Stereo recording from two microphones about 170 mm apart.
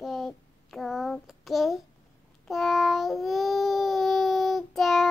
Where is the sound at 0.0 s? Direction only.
Centre (ahead or behind).